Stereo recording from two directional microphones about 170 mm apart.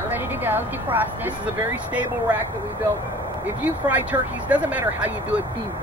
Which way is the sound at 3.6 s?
10° right (ahead or behind).